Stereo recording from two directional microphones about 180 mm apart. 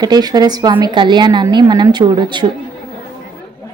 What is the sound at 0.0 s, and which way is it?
A woman's voice, 20° right (ahead or behind).